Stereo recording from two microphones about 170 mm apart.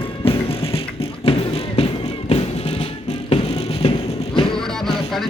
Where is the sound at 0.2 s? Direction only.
35° left (ahead or behind).